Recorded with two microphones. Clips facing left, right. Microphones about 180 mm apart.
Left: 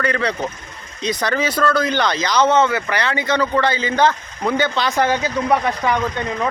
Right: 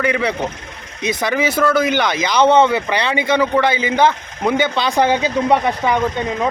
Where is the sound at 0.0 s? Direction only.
10° right (ahead or behind).